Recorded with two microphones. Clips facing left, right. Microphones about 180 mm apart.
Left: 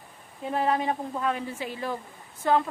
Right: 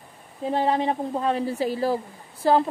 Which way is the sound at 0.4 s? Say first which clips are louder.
Right 3 dB; 30° right (ahead or behind).